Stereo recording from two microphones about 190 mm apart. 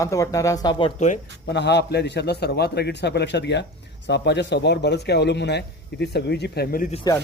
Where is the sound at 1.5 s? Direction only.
65° left (ahead or behind).